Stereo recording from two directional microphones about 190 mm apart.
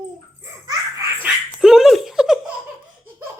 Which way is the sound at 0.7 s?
15° right (ahead or behind).